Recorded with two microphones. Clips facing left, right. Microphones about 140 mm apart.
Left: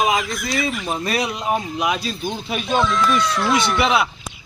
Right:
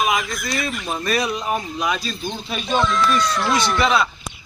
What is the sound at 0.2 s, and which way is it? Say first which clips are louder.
Speech: left 2 dB; centre (ahead or behind).